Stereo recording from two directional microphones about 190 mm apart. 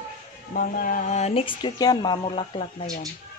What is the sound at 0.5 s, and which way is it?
Speech, 50° left (ahead or behind).